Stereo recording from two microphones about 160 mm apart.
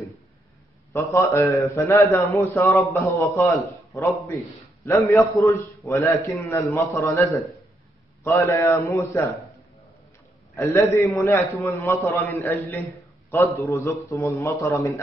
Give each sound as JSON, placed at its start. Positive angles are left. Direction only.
{"t": 0.9, "sound": "a man's voice", "side_deg": 20}
{"t": 5.4, "sound": "a man's voice", "side_deg": 20}
{"t": 10.5, "sound": "a man's voice", "side_deg": 20}